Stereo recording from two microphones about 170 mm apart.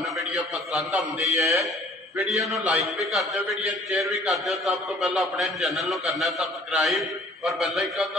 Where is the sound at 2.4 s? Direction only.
20° right (ahead or behind).